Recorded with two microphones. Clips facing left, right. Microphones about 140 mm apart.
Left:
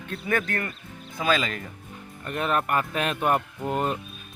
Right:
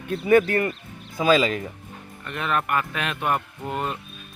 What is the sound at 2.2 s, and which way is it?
Speech, 40° left (ahead or behind).